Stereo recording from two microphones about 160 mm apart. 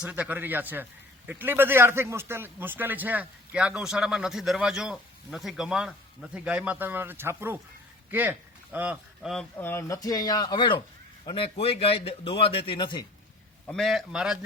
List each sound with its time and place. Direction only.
0.0 s a man's voice: 10° right (ahead or behind)
9.6 s a man's voice: 15° left (ahead or behind)
13.7 s a man's voice: centre (ahead or behind)